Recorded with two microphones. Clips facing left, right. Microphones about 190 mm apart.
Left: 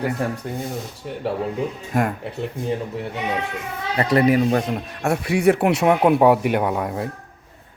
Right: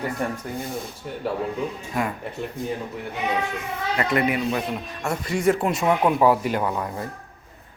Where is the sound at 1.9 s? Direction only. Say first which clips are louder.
Left 6 dB; 50° left (ahead or behind).